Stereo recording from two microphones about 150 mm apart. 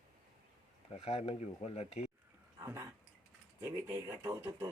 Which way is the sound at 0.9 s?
45° left (ahead or behind).